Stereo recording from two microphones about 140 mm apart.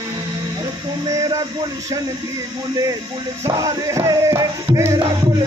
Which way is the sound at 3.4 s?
25° right (ahead or behind).